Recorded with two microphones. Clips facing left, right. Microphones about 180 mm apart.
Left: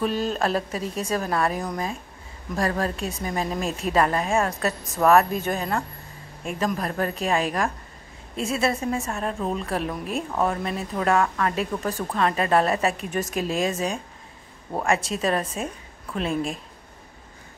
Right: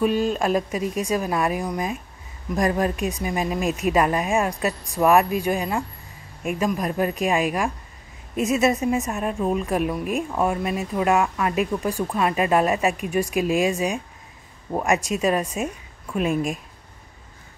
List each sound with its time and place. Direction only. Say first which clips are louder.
0.3 s a woman's voice: right 3 dB; 15° right (ahead or behind)